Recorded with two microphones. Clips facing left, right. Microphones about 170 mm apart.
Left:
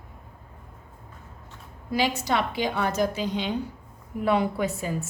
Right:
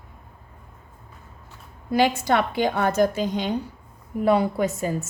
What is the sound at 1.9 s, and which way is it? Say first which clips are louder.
A woman's voice: right 5 dB; 55° right (ahead or behind).